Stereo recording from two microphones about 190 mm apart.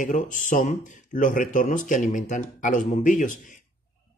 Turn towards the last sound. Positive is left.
turn(degrees=45)  # may be behind; listen again after turning